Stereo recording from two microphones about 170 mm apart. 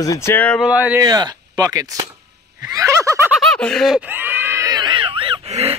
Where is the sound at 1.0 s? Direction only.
25° right (ahead or behind).